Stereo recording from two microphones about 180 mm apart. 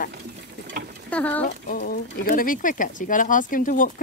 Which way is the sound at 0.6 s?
60° right (ahead or behind).